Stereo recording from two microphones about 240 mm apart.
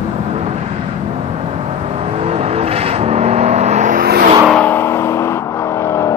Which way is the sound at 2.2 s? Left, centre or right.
Right.